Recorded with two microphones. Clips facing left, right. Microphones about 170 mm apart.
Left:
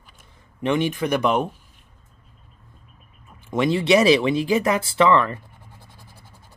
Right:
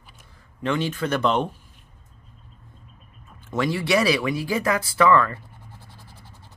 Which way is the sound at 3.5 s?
20° left (ahead or behind).